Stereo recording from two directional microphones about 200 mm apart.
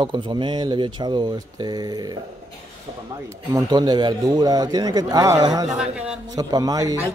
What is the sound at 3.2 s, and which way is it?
A man's voice, 20° right (ahead or behind).